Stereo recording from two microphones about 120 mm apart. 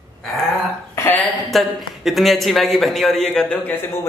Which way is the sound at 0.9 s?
15° left (ahead or behind).